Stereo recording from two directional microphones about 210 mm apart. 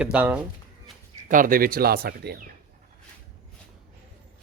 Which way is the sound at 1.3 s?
40° right (ahead or behind).